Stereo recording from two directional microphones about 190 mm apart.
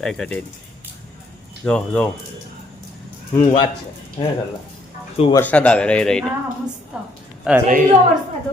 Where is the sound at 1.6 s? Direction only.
5° left (ahead or behind).